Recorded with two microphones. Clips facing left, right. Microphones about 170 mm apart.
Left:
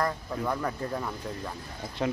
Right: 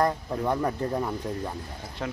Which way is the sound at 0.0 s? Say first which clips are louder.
Right 4 dB; 25° right (ahead or behind).